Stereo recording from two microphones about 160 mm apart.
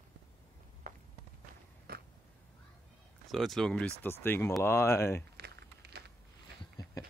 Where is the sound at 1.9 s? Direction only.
70° right (ahead or behind).